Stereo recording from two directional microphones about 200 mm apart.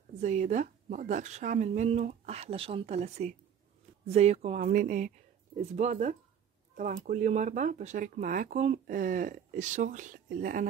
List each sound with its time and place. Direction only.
0.2 s speech: 35° right (ahead or behind)